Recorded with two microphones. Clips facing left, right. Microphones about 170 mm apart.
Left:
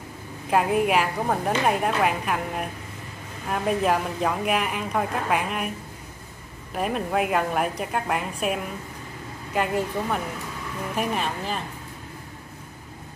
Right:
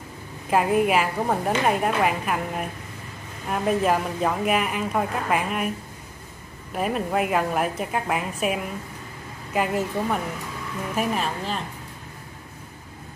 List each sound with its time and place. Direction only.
0.5 s a woman's voice: centre (ahead or behind)
6.7 s a woman's voice: centre (ahead or behind)